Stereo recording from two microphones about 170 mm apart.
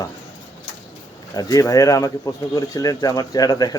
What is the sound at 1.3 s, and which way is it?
Speech, 20° left (ahead or behind).